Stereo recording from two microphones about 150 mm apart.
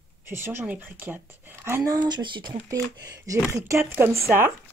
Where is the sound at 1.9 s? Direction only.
25° right (ahead or behind).